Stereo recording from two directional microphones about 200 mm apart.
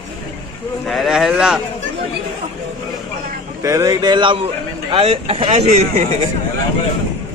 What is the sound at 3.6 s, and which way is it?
Speech, 15° right (ahead or behind).